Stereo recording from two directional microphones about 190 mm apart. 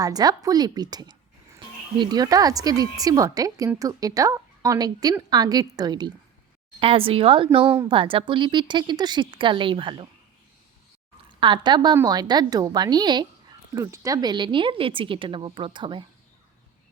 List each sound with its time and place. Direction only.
0.0 s a woman's voice: 20° right (ahead or behind)
11.3 s a woman's voice: 25° right (ahead or behind)